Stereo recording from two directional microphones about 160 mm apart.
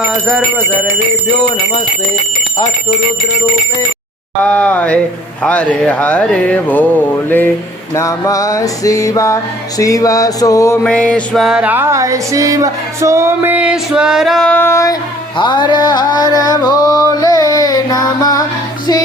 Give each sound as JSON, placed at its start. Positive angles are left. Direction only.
{"t": 4.4, "sound": "speech", "side_deg": 10}
{"t": 7.9, "sound": "music", "side_deg": 20}
{"t": 10.8, "sound": "music", "side_deg": 5}
{"t": 15.4, "sound": "music", "side_deg": 30}